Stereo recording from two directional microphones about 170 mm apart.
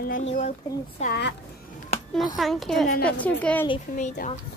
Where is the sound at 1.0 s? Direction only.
40° left (ahead or behind).